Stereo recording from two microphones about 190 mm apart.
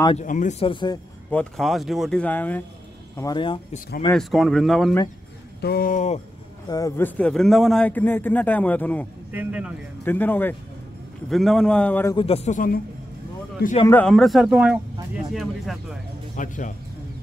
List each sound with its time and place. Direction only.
0.2 s speech: 40° left (ahead or behind)
1.3 s speech: 5° left (ahead or behind)
3.2 s speech: 20° left (ahead or behind)
4.1 s speech: centre (ahead or behind)
5.6 s speech: 50° left (ahead or behind)
6.7 s a man's voice: 15° left (ahead or behind)
9.3 s a man's voice: 10° right (ahead or behind)
10.0 s a man's voice: 10° left (ahead or behind)
12.2 s speech: 30° left (ahead or behind)
13.8 s speech: 5° left (ahead or behind)
16.3 s speech: 40° left (ahead or behind)